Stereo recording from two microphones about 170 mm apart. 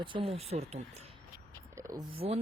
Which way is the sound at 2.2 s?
40° right (ahead or behind).